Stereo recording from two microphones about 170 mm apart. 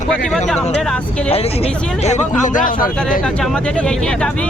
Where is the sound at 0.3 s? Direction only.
5° left (ahead or behind).